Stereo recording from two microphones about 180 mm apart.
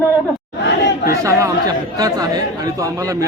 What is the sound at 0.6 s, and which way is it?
Speech, 75° left (ahead or behind).